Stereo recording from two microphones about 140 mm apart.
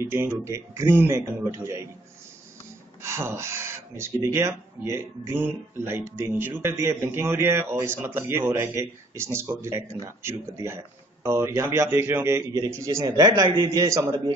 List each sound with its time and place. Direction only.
0.0 s speech: 15° right (ahead or behind)
3.0 s speech: 20° right (ahead or behind)